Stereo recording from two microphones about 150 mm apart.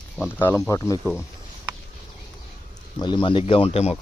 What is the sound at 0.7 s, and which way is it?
Speech, 20° left (ahead or behind).